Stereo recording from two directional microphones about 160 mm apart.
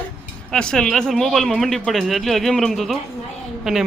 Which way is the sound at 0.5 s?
5° left (ahead or behind).